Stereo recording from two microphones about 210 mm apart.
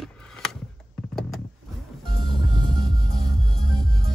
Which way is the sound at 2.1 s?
20° right (ahead or behind).